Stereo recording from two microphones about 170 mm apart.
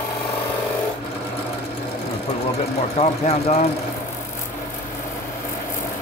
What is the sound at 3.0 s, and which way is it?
Speech, 40° left (ahead or behind).